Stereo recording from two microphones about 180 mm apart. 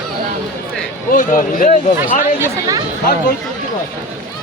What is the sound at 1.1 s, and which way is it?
Speech, 50° left (ahead or behind).